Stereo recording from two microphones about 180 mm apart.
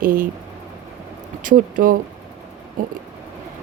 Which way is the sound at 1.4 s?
50° right (ahead or behind).